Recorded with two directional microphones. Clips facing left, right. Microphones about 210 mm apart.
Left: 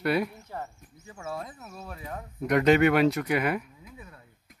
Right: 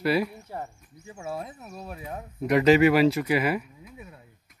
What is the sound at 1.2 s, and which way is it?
Speech, 20° right (ahead or behind).